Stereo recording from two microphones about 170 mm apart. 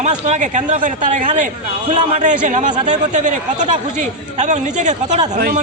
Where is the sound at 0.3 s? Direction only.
45° right (ahead or behind).